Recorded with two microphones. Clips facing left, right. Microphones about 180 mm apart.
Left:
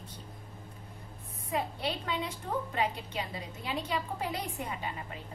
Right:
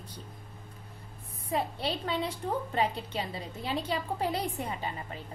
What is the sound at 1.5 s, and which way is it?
A woman's voice, 30° right (ahead or behind).